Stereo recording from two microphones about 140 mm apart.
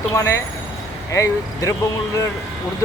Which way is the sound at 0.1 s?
20° left (ahead or behind).